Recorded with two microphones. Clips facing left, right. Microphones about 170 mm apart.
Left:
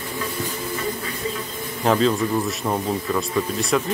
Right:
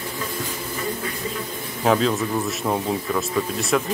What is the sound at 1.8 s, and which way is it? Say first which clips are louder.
A man's voice: left 1 dB; centre (ahead or behind).